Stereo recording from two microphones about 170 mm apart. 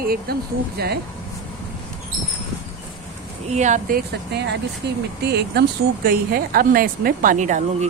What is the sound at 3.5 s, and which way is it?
Speech, 45° right (ahead or behind).